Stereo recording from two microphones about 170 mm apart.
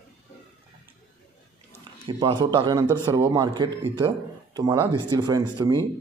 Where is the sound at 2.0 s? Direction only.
25° right (ahead or behind).